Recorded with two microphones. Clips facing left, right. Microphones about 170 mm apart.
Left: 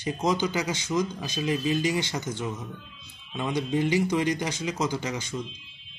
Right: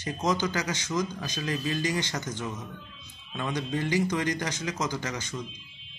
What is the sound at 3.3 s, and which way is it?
A man's voice, 15° left (ahead or behind).